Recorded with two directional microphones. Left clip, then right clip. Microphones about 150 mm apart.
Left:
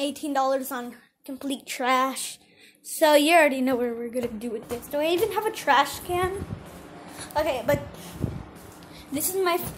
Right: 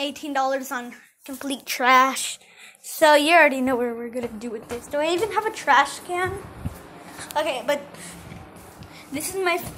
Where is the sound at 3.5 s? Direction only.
5° left (ahead or behind).